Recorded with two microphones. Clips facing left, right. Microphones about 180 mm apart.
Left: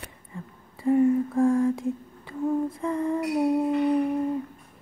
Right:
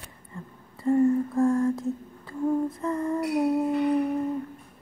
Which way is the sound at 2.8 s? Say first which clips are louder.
Left 1 dB; 10° left (ahead or behind).